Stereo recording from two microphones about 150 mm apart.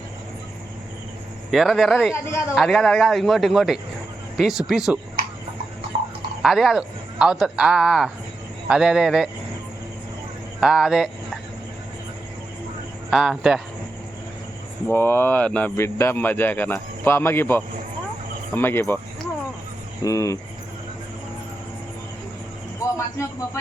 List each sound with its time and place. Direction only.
1.5 s a man's voice: centre (ahead or behind)
5.9 s a sound: 50° right (ahead or behind)
6.4 s a man's voice: centre (ahead or behind)
10.6 s a man's voice: 5° right (ahead or behind)
13.1 s a man's voice: 5° right (ahead or behind)
14.8 s speech: 15° left (ahead or behind)
20.1 s speech: 20° left (ahead or behind)
22.8 s a sound: 20° left (ahead or behind)